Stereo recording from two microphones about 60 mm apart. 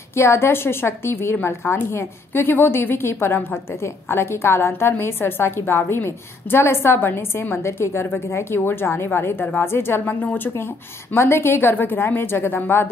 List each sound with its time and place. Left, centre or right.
0.1 s a woman's voice: left